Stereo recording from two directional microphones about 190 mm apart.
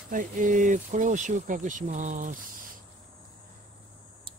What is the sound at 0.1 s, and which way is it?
Speech, 45° right (ahead or behind).